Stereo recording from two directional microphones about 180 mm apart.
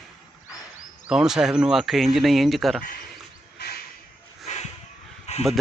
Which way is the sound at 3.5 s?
65° left (ahead or behind).